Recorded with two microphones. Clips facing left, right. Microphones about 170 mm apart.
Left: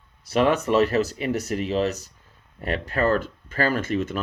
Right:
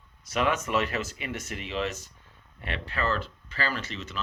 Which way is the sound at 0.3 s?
35° left (ahead or behind).